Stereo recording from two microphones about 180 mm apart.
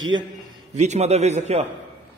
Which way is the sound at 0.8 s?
35° right (ahead or behind).